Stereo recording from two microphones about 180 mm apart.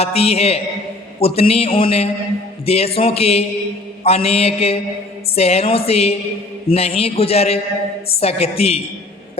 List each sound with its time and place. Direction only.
0.0 s a man's voice: 35° left (ahead or behind)